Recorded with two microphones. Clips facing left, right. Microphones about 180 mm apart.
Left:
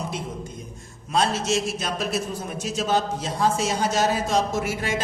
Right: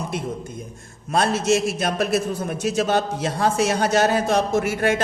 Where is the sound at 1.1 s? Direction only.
55° right (ahead or behind).